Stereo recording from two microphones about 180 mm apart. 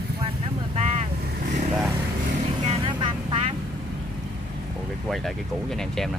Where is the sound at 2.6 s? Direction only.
30° right (ahead or behind).